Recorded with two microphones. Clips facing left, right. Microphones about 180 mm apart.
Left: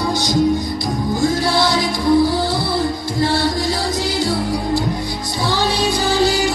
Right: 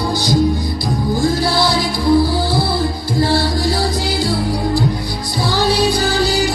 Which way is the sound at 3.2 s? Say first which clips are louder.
Right 2 dB; 35° right (ahead or behind).